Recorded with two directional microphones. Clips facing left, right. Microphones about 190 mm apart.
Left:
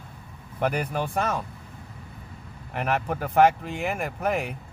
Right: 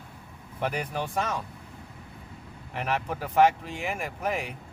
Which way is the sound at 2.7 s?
55° left (ahead or behind).